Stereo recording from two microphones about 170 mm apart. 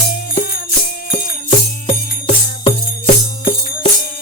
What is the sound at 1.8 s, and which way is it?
Music, 35° left (ahead or behind).